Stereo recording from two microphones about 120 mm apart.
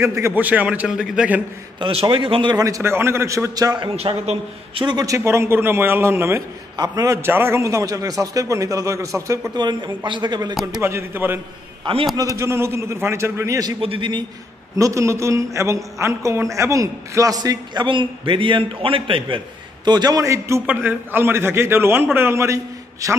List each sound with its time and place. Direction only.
0.0 s a man's voice: 25° right (ahead or behind); by 1.4 s 10° right (ahead or behind)
1.8 s a man's voice: 45° right (ahead or behind)
2.5 s a man's voice: 30° right (ahead or behind)
3.9 s a man's voice: 60° right (ahead or behind)
4.9 s a man's voice: 30° right (ahead or behind)
9.6 s a man's voice: 40° right (ahead or behind)
10.8 s a man's voice: 20° right (ahead or behind)
13.7 s a man's voice: 45° right (ahead or behind)
14.8 s a man's voice: 25° right (ahead or behind)
20.6 s a man's voice: 15° right (ahead or behind)